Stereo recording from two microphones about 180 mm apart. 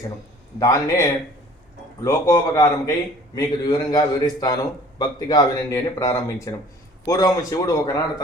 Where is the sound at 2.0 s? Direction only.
15° left (ahead or behind).